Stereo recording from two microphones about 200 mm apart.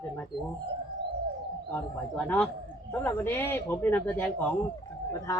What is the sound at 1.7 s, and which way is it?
Speech, 10° left (ahead or behind).